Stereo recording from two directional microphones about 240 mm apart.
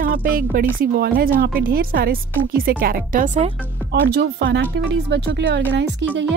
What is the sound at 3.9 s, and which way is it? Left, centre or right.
Speech, right.